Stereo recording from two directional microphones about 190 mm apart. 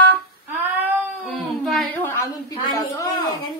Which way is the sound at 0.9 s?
10° right (ahead or behind).